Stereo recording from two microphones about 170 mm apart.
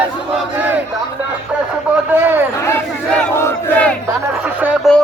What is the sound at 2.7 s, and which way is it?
Battle cry, 10° left (ahead or behind).